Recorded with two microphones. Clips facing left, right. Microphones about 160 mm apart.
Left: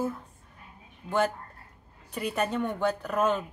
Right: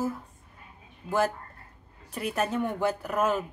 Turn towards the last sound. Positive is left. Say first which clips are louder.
# even
turn(degrees=-5)  # may be behind; listen again after turning